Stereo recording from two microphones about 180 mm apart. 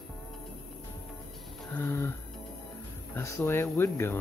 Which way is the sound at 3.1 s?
15° left (ahead or behind).